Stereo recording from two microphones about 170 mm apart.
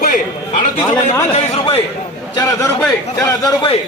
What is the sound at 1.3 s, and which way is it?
Speech, 35° left (ahead or behind).